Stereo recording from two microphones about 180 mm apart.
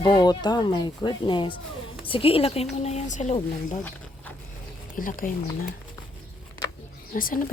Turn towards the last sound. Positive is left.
turn(degrees=50)  # may be behind; listen again after turning